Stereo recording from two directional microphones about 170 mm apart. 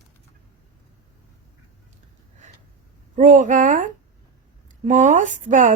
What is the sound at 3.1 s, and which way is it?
Speech, 50° right (ahead or behind).